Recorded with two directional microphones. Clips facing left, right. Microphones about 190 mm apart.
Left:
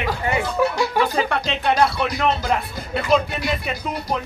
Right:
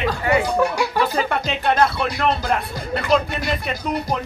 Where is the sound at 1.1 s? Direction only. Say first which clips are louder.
Even; centre (ahead or behind).